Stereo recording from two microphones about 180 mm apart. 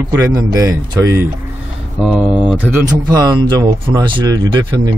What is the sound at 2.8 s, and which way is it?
Speech, 20° right (ahead or behind).